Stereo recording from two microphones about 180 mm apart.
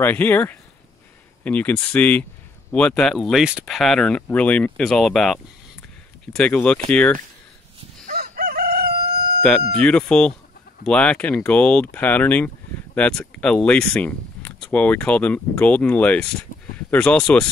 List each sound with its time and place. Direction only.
0.0 s speech: 10° left (ahead or behind)
8.1 s crowing: 55° right (ahead or behind)
9.8 s speech: 5° left (ahead or behind)